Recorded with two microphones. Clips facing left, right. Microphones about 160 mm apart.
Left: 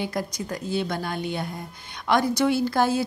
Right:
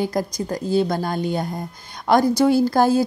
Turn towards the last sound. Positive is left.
turn(degrees=-40)  # may be behind; listen again after turning